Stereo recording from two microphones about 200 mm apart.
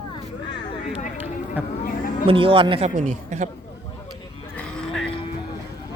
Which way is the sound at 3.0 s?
35° right (ahead or behind).